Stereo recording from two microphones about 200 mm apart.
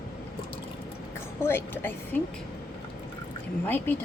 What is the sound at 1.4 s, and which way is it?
Speech, 10° left (ahead or behind).